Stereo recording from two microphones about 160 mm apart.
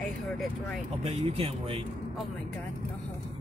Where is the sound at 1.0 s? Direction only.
40° right (ahead or behind).